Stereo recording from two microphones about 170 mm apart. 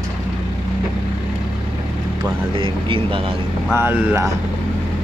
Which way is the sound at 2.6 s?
30° right (ahead or behind).